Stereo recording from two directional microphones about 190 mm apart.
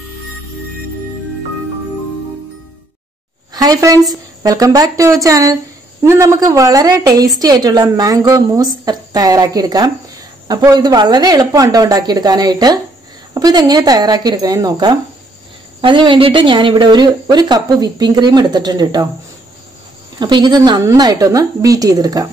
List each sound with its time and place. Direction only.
3.5 s a woman's voice: 20° right (ahead or behind)
20.2 s a woman's voice: 25° right (ahead or behind)